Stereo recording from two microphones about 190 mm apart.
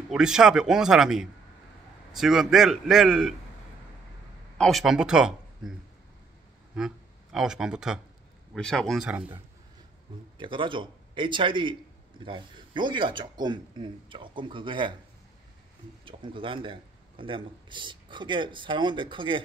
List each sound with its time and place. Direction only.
0.1 s a man's voice: 5° right (ahead or behind)
4.6 s speech: centre (ahead or behind)
7.3 s a man's voice: 5° right (ahead or behind)
10.3 s a man's voice: 25° right (ahead or behind)
16.1 s speech: 25° right (ahead or behind)